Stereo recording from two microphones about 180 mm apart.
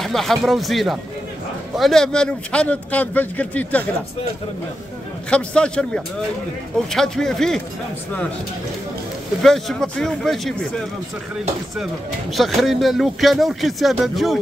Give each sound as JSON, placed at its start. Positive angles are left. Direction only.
{"t": 0.0, "sound": "a man's voice", "side_deg": 0}
{"t": 5.3, "sound": "speech", "side_deg": 5}
{"t": 9.4, "sound": "speech", "side_deg": 0}
{"t": 11.7, "sound": "speech", "side_deg": 0}